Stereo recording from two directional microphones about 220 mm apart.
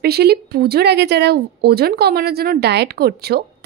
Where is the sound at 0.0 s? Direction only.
45° right (ahead or behind).